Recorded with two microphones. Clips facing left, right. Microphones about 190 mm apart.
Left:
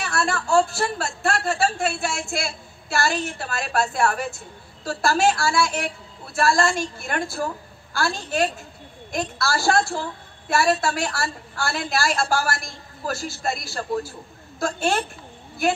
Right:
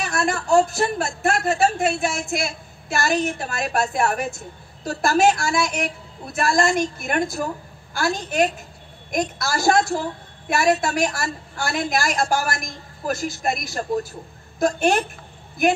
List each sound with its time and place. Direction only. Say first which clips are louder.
0.0 s a woman's voice: right 2 dB; 20° right (ahead or behind)